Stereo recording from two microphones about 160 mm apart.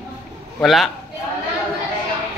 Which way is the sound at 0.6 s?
Centre (ahead or behind).